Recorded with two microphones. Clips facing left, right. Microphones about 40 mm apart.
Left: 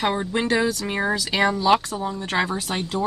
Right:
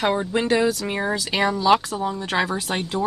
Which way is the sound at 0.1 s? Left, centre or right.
Centre.